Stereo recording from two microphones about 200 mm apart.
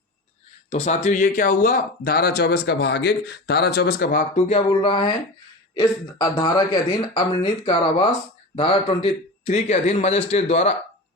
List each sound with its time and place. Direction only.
0.7 s speech: 35° left (ahead or behind)
4.4 s a man's voice: 30° left (ahead or behind)